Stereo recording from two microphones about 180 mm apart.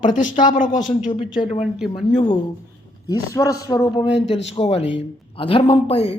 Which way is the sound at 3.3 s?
20° left (ahead or behind).